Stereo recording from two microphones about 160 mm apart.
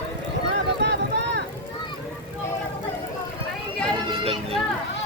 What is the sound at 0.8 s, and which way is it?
Vehicle, 90° right.